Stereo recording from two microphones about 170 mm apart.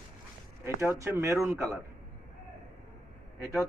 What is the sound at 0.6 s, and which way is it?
A man's voice, 15° right (ahead or behind).